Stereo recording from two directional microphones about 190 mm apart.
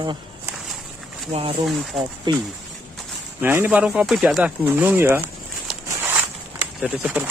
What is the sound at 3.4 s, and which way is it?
Speech, 10° right (ahead or behind).